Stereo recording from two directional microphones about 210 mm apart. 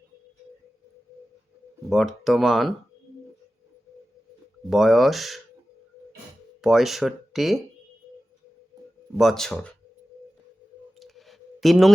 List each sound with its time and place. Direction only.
1.9 s speech: centre (ahead or behind)
4.7 s speech: centre (ahead or behind)
6.6 s speech: centre (ahead or behind)
9.1 s speech: centre (ahead or behind)
11.0 s a sound: centre (ahead or behind)